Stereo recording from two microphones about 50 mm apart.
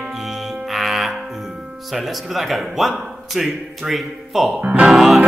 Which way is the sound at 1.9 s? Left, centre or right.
Centre.